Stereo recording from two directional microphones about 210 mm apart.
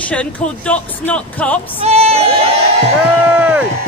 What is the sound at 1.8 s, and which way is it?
Speech, 30° right (ahead or behind).